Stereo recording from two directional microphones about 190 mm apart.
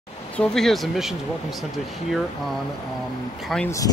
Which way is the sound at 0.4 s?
5° left (ahead or behind).